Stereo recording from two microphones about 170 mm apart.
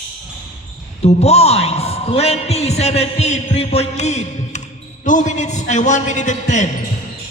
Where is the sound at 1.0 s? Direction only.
40° left (ahead or behind).